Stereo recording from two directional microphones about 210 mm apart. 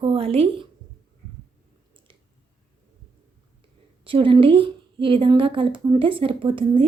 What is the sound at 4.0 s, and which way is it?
A woman's voice, 25° right (ahead or behind).